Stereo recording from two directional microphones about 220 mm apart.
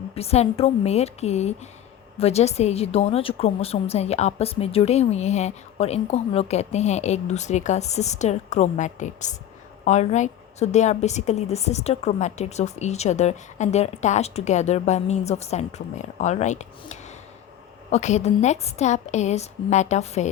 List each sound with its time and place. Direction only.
0.1 s a woman's voice: 25° left (ahead or behind)